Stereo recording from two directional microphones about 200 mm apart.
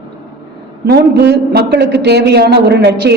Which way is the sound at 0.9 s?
55° right (ahead or behind).